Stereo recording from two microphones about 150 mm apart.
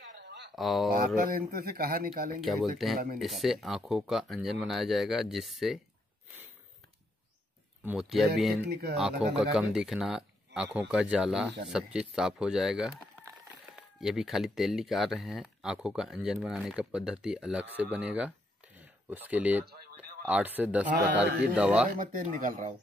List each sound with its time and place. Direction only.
0.6 s speech: centre (ahead or behind)
0.9 s speech: 70° right (ahead or behind)
2.4 s speech: centre (ahead or behind)
7.8 s speech: 5° right (ahead or behind)
8.5 s speech: 90° right
8.9 s speech: 5° right (ahead or behind)
19.6 s a sound: 90° right
20.2 s speech: 10° right (ahead or behind)
21.8 s speech: 65° right (ahead or behind)